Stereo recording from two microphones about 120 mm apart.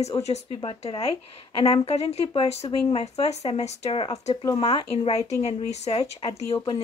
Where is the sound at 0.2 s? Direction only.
65° left (ahead or behind).